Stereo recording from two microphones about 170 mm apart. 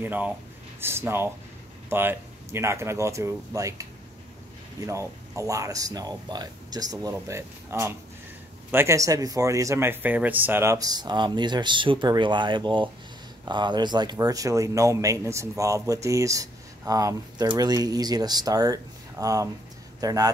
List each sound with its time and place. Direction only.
0.0 s speech: 10° right (ahead or behind)
4.8 s speech: 15° right (ahead or behind)